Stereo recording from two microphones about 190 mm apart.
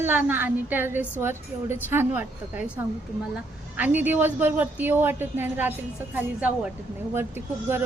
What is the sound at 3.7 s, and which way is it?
A woman's voice, 10° right (ahead or behind).